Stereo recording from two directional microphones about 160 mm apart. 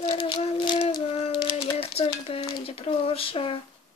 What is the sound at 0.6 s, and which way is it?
Speech, 30° left (ahead or behind).